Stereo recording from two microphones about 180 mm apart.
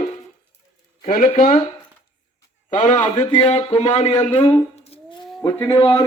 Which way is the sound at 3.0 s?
25° left (ahead or behind).